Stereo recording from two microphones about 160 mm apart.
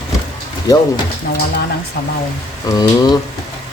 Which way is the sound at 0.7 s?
20° left (ahead or behind).